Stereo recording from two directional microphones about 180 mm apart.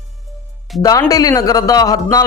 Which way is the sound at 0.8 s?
20° left (ahead or behind).